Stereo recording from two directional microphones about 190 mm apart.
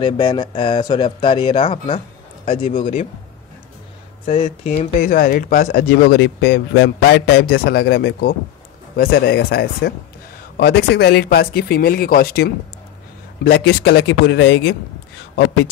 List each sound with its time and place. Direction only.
0.0 s speech: 25° left (ahead or behind)
4.3 s speech: 35° left (ahead or behind)
6.2 s a man's voice: 65° left (ahead or behind)